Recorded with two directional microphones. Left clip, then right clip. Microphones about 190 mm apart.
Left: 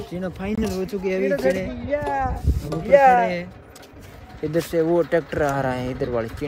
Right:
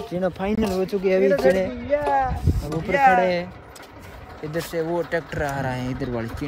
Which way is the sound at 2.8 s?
45° left (ahead or behind).